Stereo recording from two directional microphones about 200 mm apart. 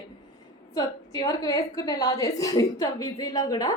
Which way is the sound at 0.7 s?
20° left (ahead or behind).